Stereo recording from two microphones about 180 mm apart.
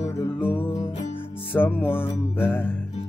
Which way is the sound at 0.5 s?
10° left (ahead or behind).